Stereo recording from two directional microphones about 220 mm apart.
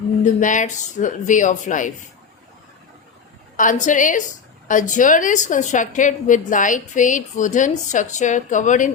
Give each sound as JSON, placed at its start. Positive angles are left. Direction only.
{"t": 0.3, "sound": "a woman's voice", "side_deg": 35}
{"t": 3.6, "sound": "a woman's voice", "side_deg": 35}